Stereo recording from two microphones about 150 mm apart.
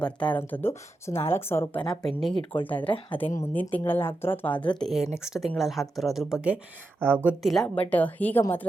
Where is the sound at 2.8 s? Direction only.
35° left (ahead or behind).